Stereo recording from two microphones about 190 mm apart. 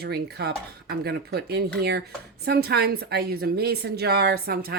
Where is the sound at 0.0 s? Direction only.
55° right (ahead or behind).